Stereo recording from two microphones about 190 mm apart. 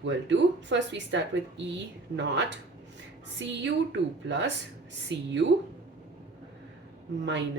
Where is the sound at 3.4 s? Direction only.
75° right (ahead or behind).